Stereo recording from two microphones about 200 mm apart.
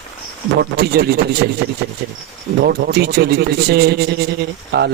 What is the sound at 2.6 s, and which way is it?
A man's voice, 50° right (ahead or behind).